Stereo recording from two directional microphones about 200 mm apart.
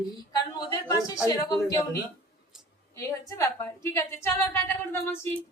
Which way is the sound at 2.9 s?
15° left (ahead or behind).